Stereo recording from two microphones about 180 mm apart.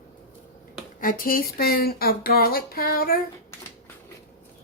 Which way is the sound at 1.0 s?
50° left (ahead or behind).